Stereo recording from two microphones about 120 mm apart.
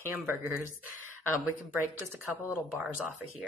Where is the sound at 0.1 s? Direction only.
20° right (ahead or behind).